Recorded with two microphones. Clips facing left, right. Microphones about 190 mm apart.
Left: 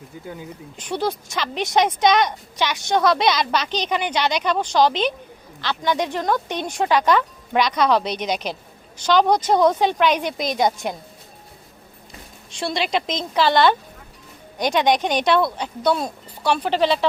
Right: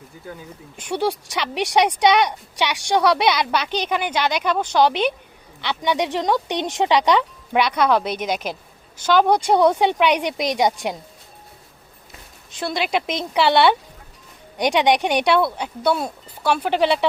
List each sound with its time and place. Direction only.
0.8 s speech: 10° right (ahead or behind)
12.5 s speech: 5° right (ahead or behind)